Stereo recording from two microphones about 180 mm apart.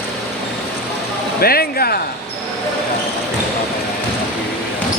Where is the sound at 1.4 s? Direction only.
55° left (ahead or behind).